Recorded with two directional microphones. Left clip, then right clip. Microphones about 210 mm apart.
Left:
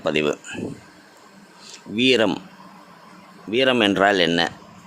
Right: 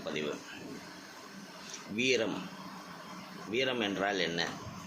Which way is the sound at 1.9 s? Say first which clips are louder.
Left 12 dB; 55° left (ahead or behind).